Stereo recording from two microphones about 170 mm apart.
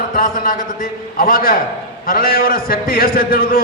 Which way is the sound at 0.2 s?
55° left (ahead or behind).